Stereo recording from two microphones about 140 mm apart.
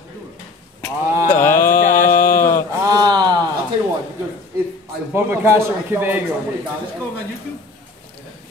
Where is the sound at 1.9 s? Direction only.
70° left (ahead or behind).